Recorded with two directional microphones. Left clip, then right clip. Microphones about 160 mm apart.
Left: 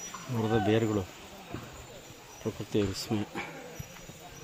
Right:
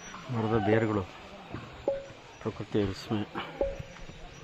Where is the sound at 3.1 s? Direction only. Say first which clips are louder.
Even; 15° left (ahead or behind).